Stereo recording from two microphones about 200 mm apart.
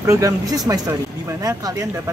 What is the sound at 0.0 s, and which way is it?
Speech, 15° right (ahead or behind).